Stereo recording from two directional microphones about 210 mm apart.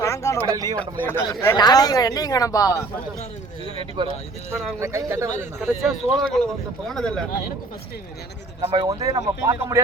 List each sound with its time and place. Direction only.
0.0 s a sound: 15° left (ahead or behind)
0.5 s speech: 20° right (ahead or behind)
1.0 s speech: 10° left (ahead or behind)
3.8 s speech: 25° right (ahead or behind)
4.8 s speech: 15° right (ahead or behind)
5.5 s speech: centre (ahead or behind)
8.7 s speech: 20° right (ahead or behind)